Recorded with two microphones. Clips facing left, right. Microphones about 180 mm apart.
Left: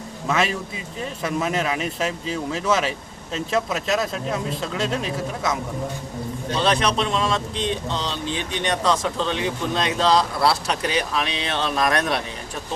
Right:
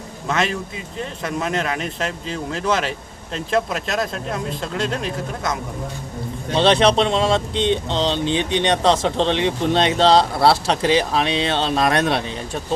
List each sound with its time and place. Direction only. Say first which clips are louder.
0.3 s speech: right 1 dB; 5° left (ahead or behind)
6.5 s speech: right 6 dB; 30° right (ahead or behind)